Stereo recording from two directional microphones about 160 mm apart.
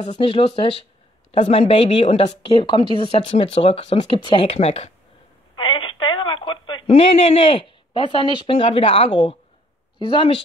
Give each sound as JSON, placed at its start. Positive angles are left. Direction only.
{"t": 0.0, "sound": "speech", "side_deg": 30}